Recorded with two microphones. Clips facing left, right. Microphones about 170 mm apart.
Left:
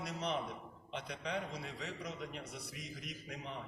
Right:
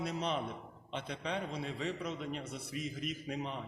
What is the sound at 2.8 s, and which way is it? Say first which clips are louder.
Speech: right 12 dB; 25° right (ahead or behind).